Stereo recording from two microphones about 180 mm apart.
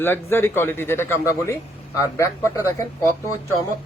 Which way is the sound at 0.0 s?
10° left (ahead or behind).